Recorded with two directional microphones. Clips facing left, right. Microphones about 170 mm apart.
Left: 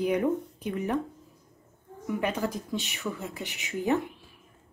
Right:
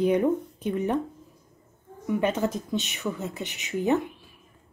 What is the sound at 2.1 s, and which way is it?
A woman's voice, 25° right (ahead or behind).